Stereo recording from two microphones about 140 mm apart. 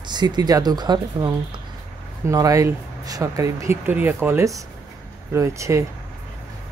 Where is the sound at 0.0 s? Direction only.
30° right (ahead or behind).